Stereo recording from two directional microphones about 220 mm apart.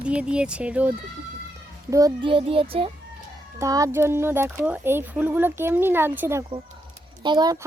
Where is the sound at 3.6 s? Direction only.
15° right (ahead or behind).